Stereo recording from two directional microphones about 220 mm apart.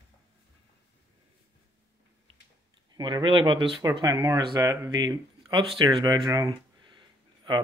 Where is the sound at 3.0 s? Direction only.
20° right (ahead or behind).